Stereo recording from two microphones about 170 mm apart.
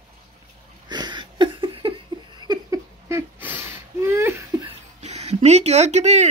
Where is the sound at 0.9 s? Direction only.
25° right (ahead or behind).